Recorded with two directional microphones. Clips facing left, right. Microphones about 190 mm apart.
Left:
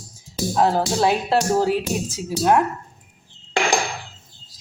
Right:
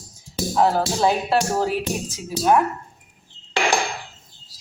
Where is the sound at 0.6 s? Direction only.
15° left (ahead or behind).